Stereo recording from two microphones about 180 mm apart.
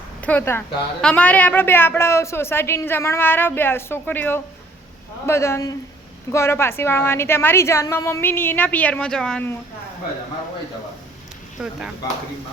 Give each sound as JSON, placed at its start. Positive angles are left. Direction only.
{"t": 0.2, "sound": "a woman's voice", "side_deg": 10}
{"t": 11.6, "sound": "speech", "side_deg": -5}